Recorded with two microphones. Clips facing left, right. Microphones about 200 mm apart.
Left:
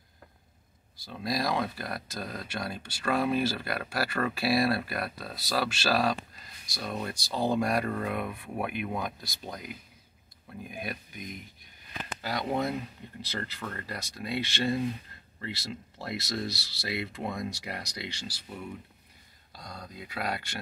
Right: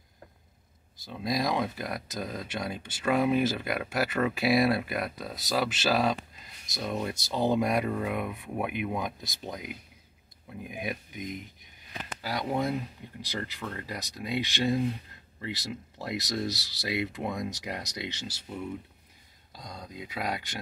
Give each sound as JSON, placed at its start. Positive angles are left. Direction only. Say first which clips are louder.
{"t": 0.9, "sound": "speech", "louder": "right 2 dB", "side_deg": -20}
{"t": 19.5, "sound": "speech", "louder": "right 1 dB", "side_deg": -20}